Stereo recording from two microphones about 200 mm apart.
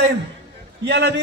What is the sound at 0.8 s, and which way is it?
Speech, 55° right (ahead or behind).